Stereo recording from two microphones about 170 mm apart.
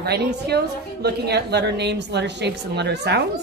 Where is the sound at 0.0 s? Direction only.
70° right (ahead or behind).